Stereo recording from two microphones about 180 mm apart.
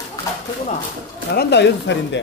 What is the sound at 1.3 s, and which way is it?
Speech, 70° left (ahead or behind).